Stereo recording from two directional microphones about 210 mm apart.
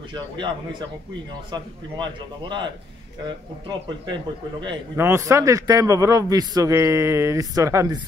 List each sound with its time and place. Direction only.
0.1 s a man's voice: 20° right (ahead or behind)
4.0 s a man's voice: 20° right (ahead or behind)